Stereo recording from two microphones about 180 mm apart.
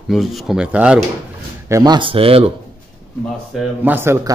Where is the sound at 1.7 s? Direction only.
25° right (ahead or behind).